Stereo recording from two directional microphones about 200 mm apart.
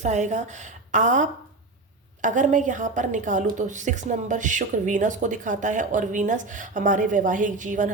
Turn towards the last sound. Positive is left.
turn(degrees=-40)  # may be behind; listen again after turning